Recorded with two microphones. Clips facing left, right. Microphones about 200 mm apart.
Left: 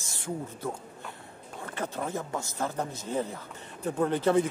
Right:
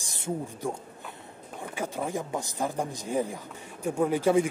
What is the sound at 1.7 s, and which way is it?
A man's voice, 15° right (ahead or behind).